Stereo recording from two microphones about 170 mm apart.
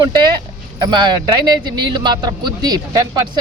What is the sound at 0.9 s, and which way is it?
Speech, 25° right (ahead or behind).